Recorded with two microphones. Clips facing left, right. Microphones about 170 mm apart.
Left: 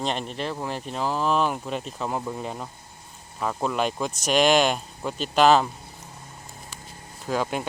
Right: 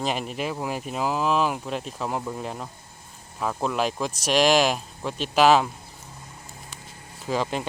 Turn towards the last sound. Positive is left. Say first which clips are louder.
# even
turn(degrees=5)  # may be behind; listen again after turning